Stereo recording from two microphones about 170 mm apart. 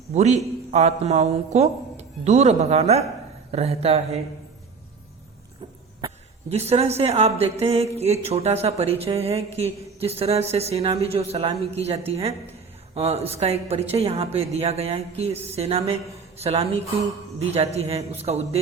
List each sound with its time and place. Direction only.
0.1 s a man's voice: 40° right (ahead or behind)
6.5 s a man's voice: 40° right (ahead or behind)